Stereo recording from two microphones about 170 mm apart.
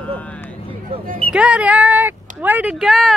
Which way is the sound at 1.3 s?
5° right (ahead or behind).